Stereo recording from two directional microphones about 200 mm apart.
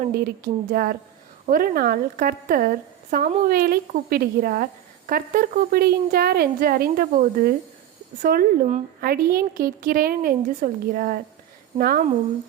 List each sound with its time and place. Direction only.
0.0 s speech: 50° right (ahead or behind)